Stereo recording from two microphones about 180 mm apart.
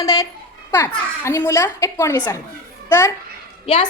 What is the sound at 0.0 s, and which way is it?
A woman's voice, 20° left (ahead or behind).